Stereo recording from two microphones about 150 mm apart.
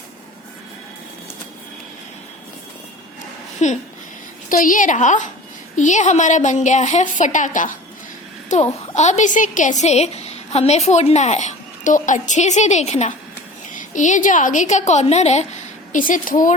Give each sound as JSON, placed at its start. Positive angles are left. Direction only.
{"t": 3.6, "sound": "a woman's voice", "side_deg": 50}
{"t": 4.4, "sound": "a woman's voice", "side_deg": 65}
{"t": 15.9, "sound": "a woman's voice", "side_deg": 60}